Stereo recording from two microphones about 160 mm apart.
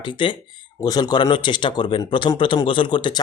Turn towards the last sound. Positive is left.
turn(degrees=30)  # may be behind; listen again after turning